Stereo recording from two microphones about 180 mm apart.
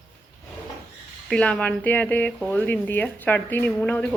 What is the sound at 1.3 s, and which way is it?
Speech, 5° left (ahead or behind).